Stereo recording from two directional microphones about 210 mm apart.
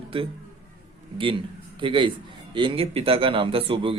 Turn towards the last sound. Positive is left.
turn(degrees=-25)  # may be behind; listen again after turning